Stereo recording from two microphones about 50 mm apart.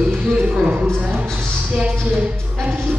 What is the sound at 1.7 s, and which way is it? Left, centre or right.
Speech, right.